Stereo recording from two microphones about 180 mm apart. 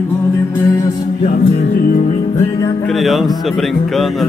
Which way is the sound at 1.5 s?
50° left (ahead or behind).